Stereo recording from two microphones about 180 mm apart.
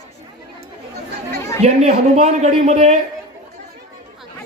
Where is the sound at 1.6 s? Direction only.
40° right (ahead or behind).